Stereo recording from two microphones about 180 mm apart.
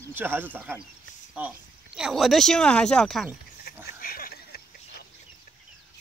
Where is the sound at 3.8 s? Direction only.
55° left (ahead or behind).